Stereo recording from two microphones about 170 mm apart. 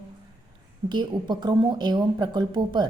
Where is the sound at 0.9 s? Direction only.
25° right (ahead or behind).